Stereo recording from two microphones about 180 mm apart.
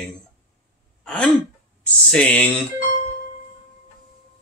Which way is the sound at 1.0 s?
5° left (ahead or behind).